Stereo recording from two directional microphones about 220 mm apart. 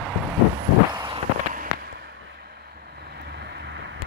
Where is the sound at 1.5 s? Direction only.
40° right (ahead or behind).